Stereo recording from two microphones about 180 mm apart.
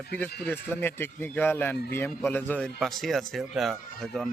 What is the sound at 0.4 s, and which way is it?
Speech, 10° left (ahead or behind).